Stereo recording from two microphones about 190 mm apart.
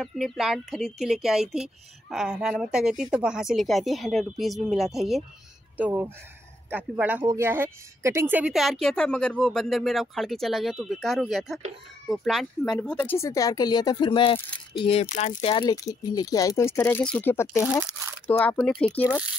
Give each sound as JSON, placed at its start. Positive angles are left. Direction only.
{"t": 0.0, "sound": "speech", "side_deg": 0}